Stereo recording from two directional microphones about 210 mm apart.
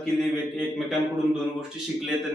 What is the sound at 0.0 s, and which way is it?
Speech, centre (ahead or behind).